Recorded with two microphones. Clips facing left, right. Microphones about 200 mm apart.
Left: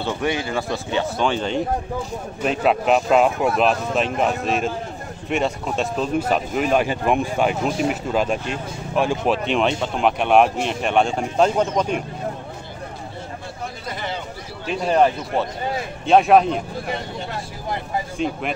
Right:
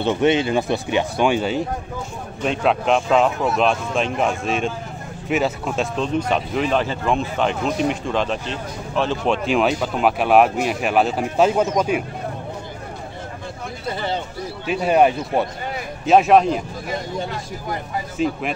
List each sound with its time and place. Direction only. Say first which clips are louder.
0.0 s speech: right 6 dB; 20° right (ahead or behind)
2.4 s speech: even; 5° left (ahead or behind)
14.7 s speech: right 2 dB; 10° right (ahead or behind)
16.1 s speech: right 1 dB; centre (ahead or behind)
18.1 s speech: right 5 dB; centre (ahead or behind)